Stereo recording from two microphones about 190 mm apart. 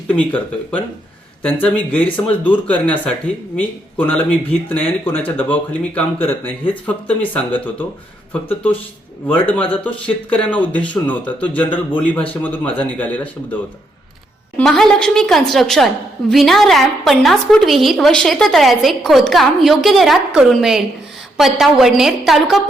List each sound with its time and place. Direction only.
0.1 s speech: 10° left (ahead or behind)
14.6 s a woman's voice: centre (ahead or behind)